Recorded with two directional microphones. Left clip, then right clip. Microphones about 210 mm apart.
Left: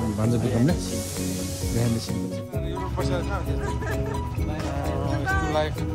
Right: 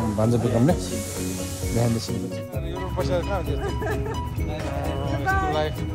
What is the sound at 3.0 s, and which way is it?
Speech, 15° left (ahead or behind).